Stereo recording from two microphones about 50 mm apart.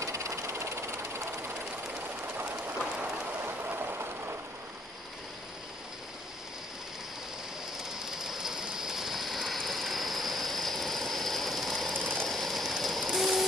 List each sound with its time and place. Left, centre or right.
0.0 s train: right
3.4 s vehicle: right
7.9 s ratchet: centre
12.2 s a sound: centre